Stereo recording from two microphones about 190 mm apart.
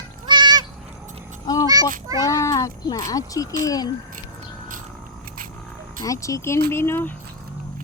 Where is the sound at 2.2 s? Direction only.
15° left (ahead or behind).